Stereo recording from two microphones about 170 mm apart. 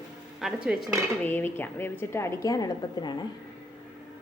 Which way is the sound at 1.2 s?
10° left (ahead or behind).